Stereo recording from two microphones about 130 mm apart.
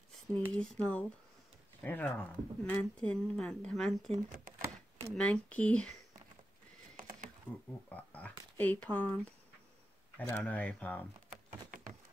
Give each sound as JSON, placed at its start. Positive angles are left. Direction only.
{"t": 0.3, "sound": "speech", "side_deg": 10}
{"t": 4.1, "sound": "speech", "side_deg": -90}
{"t": 5.1, "sound": "speech", "side_deg": 10}
{"t": 7.5, "sound": "speech", "side_deg": -10}
{"t": 7.9, "sound": "speech", "side_deg": 10}
{"t": 11.7, "sound": "a sound", "side_deg": -90}